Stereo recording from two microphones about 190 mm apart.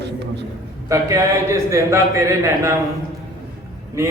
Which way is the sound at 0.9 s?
15° right (ahead or behind).